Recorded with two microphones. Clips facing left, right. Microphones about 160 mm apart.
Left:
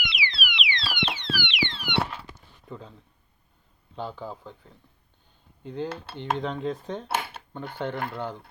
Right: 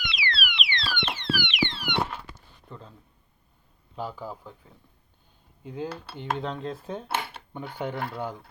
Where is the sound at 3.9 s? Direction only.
5° right (ahead or behind).